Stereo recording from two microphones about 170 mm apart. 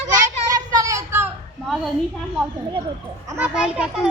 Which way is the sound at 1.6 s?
Centre (ahead or behind).